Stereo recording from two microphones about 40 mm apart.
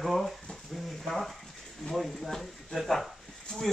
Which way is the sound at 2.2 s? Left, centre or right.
Centre.